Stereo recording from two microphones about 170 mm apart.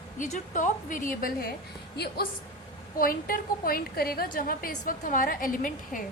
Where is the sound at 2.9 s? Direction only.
55° left (ahead or behind).